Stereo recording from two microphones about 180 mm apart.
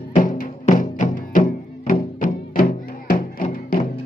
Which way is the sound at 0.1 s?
45° left (ahead or behind).